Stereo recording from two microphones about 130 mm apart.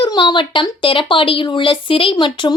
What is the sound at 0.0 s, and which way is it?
Speech, 35° left (ahead or behind).